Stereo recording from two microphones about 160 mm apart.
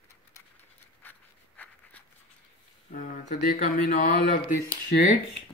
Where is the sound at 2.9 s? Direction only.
55° left (ahead or behind).